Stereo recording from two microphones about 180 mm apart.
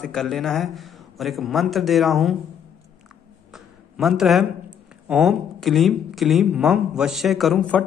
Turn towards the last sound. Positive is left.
turn(degrees=5)  # may be behind; listen again after turning